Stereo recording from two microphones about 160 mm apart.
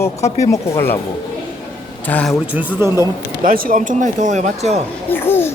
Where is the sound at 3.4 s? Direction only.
65° right (ahead or behind); by 4.8 s 45° right (ahead or behind).